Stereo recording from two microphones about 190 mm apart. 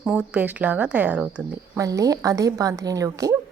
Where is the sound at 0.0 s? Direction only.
5° right (ahead or behind).